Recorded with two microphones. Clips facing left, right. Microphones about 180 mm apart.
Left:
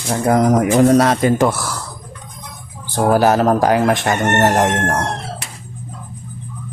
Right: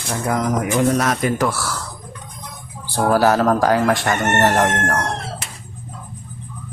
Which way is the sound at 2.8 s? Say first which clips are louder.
Left 2 dB; 20° left (ahead or behind).